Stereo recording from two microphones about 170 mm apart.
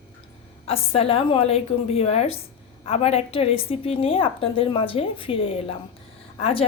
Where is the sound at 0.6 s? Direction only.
35° left (ahead or behind).